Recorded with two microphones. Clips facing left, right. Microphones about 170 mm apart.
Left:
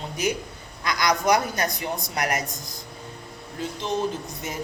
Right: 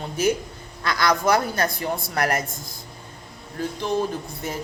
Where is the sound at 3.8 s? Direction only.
20° left (ahead or behind).